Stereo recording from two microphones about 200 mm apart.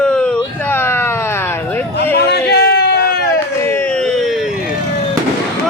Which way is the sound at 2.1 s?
55° left (ahead or behind).